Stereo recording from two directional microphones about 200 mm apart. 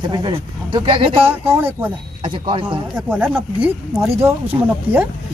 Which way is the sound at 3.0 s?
5° right (ahead or behind).